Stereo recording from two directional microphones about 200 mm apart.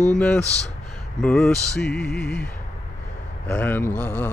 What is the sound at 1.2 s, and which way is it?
Music, 5° left (ahead or behind).